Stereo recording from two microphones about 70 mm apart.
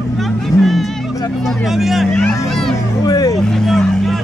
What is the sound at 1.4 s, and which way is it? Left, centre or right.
Speech, centre.